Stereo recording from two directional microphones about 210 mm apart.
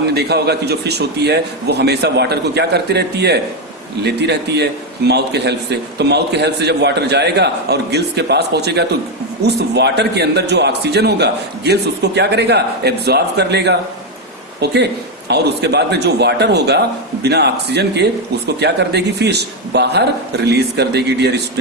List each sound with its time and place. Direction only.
0.1 s a man's voice: 50° right (ahead or behind)